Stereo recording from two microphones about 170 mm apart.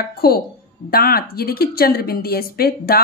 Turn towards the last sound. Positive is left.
turn(degrees=65)  # may be behind; listen again after turning